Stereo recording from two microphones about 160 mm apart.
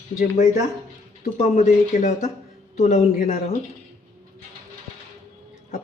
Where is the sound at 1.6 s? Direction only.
45° left (ahead or behind).